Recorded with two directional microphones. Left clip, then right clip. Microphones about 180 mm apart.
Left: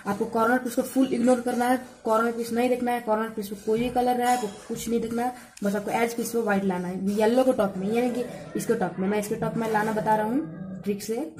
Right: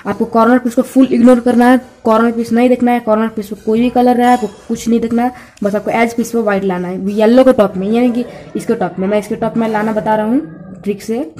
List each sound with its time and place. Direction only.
0.0 s speech: 35° right (ahead or behind)